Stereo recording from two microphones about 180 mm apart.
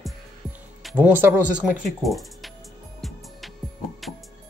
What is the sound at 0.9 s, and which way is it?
Speech, 10° right (ahead or behind).